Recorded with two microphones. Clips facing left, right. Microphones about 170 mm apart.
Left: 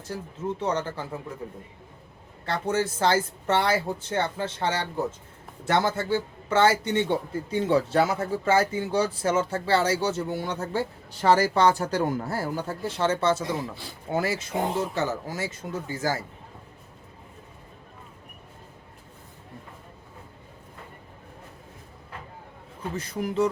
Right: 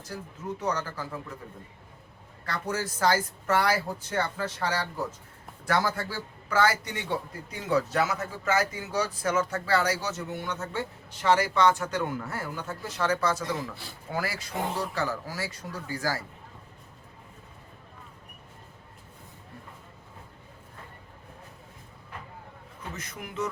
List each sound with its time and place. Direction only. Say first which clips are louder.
0.6 s a man's voice: left 2 dB; 25° left (ahead or behind)
2.5 s a man's voice: left 6 dB; 25° left (ahead or behind)
23.0 s speech: left 9 dB; 30° left (ahead or behind)